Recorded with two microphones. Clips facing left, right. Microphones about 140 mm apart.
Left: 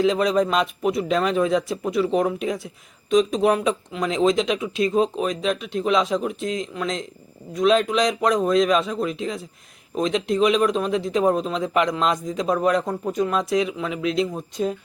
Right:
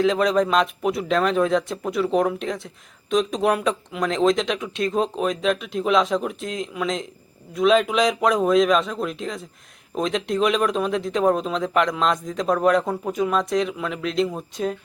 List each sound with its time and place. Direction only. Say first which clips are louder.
0.0 s a man's voice: even; centre (ahead or behind)